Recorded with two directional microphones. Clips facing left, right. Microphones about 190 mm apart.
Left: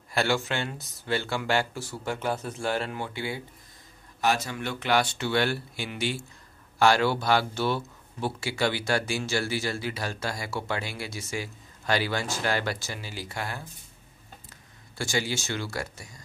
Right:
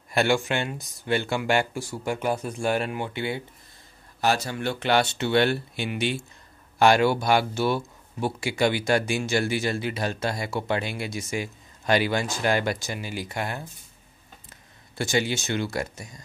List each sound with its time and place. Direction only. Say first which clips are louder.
0.1 s speech: right 4 dB; 15° right (ahead or behind)
4.2 s speech: right 2 dB; 35° right (ahead or behind)
15.0 s speech: right 4 dB; 20° right (ahead or behind)